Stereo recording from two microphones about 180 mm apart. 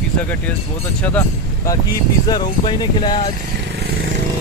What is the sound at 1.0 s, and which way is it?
Speech, 10° left (ahead or behind).